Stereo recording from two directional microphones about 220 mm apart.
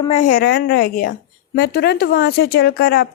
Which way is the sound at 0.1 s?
35° left (ahead or behind).